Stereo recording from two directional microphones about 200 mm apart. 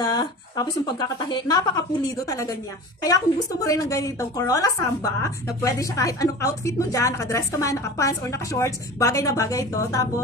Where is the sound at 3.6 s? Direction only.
15° left (ahead or behind).